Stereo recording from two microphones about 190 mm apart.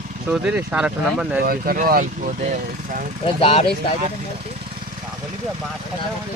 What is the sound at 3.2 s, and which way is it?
Speech, 30° left (ahead or behind).